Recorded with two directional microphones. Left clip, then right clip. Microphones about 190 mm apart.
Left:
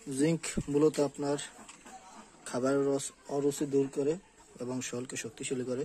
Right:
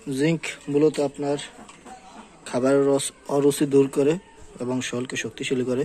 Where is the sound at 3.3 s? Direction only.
Centre (ahead or behind).